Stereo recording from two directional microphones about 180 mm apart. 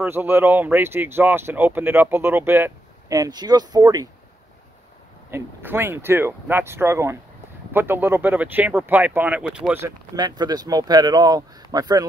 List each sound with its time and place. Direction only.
0.0 s speech: 10° right (ahead or behind)
5.3 s speech: 10° right (ahead or behind)
9.8 s speech: 20° right (ahead or behind)